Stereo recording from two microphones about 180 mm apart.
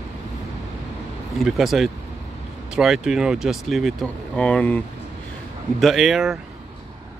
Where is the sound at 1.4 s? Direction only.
Centre (ahead or behind).